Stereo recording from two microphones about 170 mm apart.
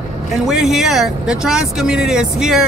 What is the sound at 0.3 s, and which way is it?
Speech, centre (ahead or behind).